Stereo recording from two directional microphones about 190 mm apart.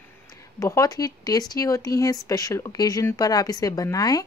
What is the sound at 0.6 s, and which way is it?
Speech, 15° left (ahead or behind).